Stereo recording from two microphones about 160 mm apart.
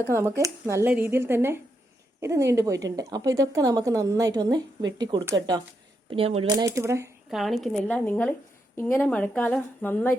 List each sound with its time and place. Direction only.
0.0 s a woman's voice: 15° right (ahead or behind)
6.1 s speech: 35° right (ahead or behind)
6.5 s speech: 20° right (ahead or behind)
7.3 s a woman's voice: centre (ahead or behind)